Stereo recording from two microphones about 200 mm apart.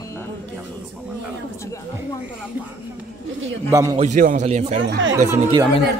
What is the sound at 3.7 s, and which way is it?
Speech, 15° right (ahead or behind).